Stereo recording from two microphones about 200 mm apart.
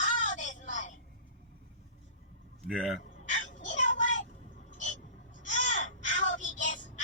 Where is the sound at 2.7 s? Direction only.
Centre (ahead or behind).